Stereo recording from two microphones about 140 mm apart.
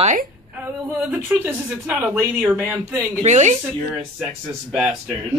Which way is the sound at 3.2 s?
55° right (ahead or behind).